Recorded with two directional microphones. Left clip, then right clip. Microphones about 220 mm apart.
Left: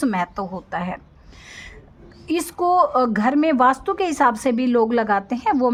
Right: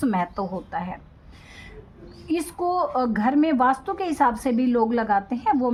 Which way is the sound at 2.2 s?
40° left (ahead or behind).